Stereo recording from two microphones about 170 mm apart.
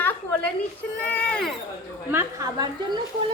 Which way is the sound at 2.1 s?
15° right (ahead or behind).